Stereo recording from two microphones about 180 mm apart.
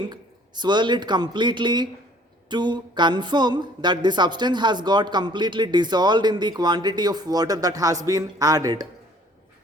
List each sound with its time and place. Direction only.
0.0 s speech: 25° right (ahead or behind)